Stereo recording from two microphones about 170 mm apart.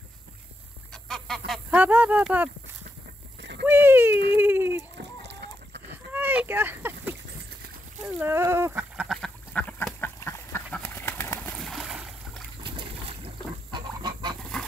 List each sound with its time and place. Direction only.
0.9 s goose: centre (ahead or behind)
1.7 s speech: 10° right (ahead or behind)
3.6 s speech: 10° right (ahead or behind)
4.4 s a sound: 10° right (ahead or behind)
4.9 s chicken: 90° right
6.1 s a sound: 10° right (ahead or behind)
8.1 s duck: 15° right (ahead or behind); by 11.5 s 15° left (ahead or behind)
11.5 s boat: centre (ahead or behind)
12.6 s goose: 30° right (ahead or behind)
14.4 s fowl: 5° left (ahead or behind)